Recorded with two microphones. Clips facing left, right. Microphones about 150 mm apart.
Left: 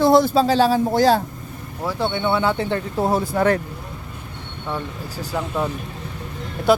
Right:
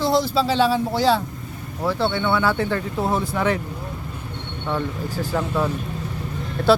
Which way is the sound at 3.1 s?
40° left (ahead or behind).